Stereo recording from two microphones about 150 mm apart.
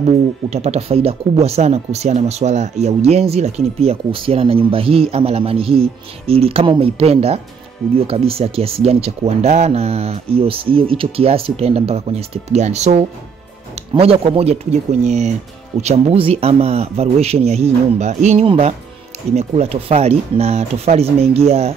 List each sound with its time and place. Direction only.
0.5 s speech: 45° right (ahead or behind)